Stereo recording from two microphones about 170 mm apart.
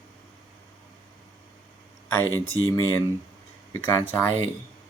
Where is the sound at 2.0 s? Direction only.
10° left (ahead or behind).